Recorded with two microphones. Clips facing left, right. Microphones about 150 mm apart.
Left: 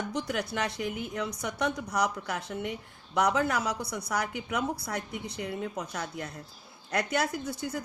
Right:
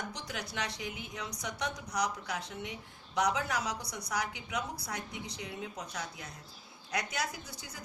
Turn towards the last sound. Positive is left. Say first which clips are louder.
# left 13 dB
turn(degrees=55)  # may be behind; listen again after turning